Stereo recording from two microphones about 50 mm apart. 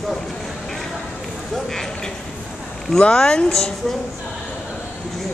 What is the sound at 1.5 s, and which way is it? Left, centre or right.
Speech, centre.